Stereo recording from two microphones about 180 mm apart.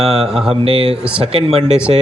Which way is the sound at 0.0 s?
35° right (ahead or behind).